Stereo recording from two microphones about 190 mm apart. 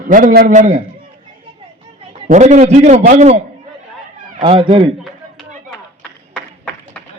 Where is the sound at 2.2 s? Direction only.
40° right (ahead or behind).